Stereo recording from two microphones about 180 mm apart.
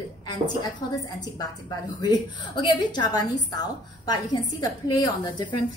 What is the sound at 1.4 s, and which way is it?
A woman's voice, 25° left (ahead or behind).